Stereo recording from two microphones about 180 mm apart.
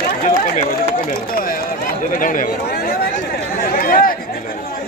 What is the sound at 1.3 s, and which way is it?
Speech, 50° left (ahead or behind).